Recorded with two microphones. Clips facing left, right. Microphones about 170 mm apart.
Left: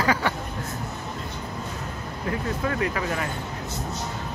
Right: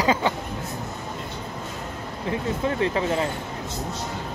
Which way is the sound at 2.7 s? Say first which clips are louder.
Right 3 dB; 25° right (ahead or behind).